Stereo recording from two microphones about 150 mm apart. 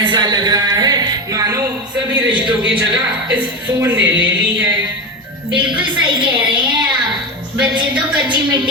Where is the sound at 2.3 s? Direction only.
30° right (ahead or behind).